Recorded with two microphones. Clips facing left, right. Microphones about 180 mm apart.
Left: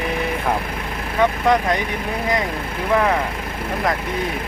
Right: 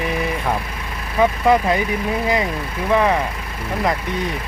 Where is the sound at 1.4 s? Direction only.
5° right (ahead or behind).